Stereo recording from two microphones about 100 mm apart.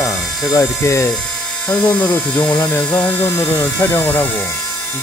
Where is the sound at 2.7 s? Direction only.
20° left (ahead or behind).